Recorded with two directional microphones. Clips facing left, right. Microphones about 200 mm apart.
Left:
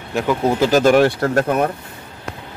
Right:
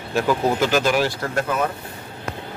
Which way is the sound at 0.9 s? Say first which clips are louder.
Left 8 dB; 55° left (ahead or behind).